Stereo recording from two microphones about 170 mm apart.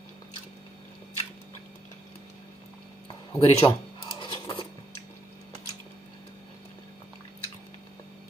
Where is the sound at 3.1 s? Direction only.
30° left (ahead or behind).